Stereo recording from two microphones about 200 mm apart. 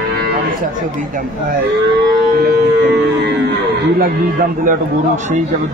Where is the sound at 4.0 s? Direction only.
45° right (ahead or behind).